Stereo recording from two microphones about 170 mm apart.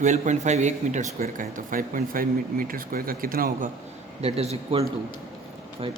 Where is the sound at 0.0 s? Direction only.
45° right (ahead or behind).